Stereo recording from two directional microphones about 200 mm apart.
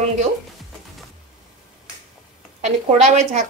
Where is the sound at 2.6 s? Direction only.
35° right (ahead or behind).